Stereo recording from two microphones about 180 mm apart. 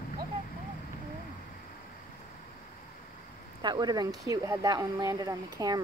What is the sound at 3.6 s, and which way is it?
Speech, 25° right (ahead or behind).